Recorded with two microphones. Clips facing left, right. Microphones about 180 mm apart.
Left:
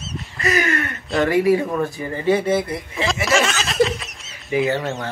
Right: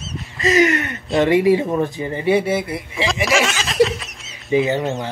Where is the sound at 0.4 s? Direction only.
20° right (ahead or behind).